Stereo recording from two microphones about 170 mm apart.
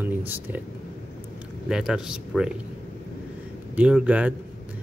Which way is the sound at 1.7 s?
5° right (ahead or behind).